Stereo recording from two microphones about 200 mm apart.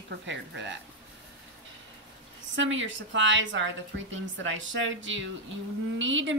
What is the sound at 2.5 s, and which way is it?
A woman's voice, 70° right (ahead or behind).